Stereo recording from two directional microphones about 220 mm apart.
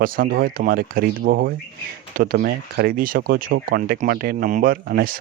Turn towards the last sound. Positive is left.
turn(degrees=-40)  # may be behind; listen again after turning